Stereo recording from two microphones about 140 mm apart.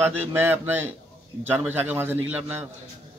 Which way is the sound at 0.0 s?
15° right (ahead or behind).